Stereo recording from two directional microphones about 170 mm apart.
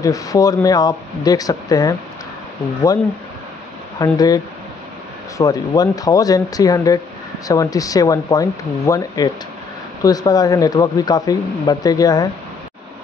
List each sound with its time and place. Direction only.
0.0 s speech: 20° left (ahead or behind)
4.0 s speech: 20° left (ahead or behind)
5.4 s speech: 20° left (ahead or behind)